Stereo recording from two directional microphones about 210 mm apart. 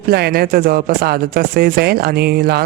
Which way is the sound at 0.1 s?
50° right (ahead or behind).